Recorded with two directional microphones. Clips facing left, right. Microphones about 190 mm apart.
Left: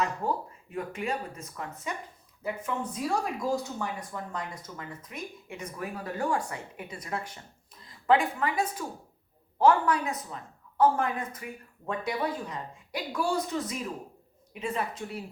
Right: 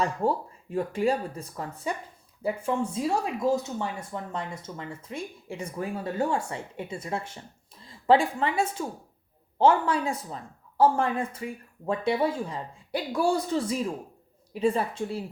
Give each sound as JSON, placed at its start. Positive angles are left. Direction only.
{"t": 0.0, "sound": "speech", "side_deg": -30}